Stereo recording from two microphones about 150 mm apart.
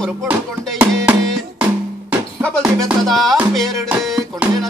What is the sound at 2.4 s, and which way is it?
Music, 5° left (ahead or behind).